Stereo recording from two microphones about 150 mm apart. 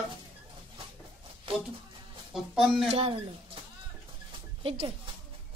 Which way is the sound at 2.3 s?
Centre (ahead or behind).